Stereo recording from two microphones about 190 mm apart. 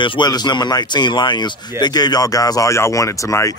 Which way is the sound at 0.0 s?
25° left (ahead or behind).